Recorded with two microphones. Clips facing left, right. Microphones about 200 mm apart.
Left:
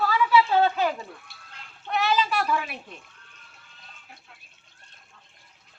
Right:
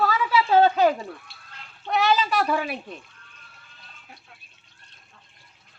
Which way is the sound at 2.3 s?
40° right (ahead or behind).